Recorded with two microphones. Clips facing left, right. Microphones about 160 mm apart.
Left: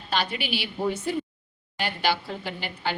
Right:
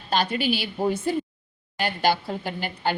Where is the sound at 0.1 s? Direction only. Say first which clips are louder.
Right 4 dB; 45° right (ahead or behind).